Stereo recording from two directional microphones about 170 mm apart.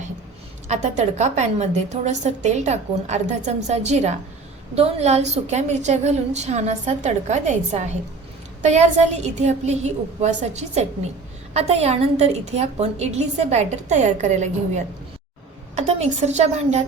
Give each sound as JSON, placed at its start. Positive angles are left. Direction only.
{"t": 0.7, "sound": "a woman's voice", "side_deg": -40}